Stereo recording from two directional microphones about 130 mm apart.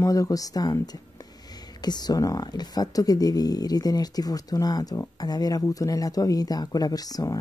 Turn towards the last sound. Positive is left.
turn(degrees=30)  # may be behind; listen again after turning